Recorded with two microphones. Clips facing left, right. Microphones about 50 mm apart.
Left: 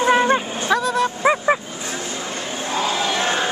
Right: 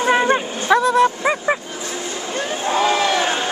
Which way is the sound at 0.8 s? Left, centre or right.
Right.